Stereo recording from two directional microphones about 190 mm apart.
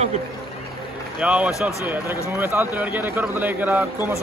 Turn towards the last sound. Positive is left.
turn(degrees=-10)  # may be behind; listen again after turning